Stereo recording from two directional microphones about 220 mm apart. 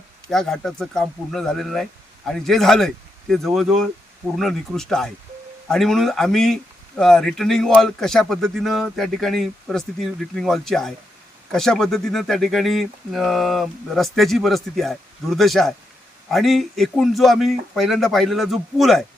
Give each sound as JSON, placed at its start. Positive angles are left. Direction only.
{"t": 0.3, "sound": "speech", "side_deg": 0}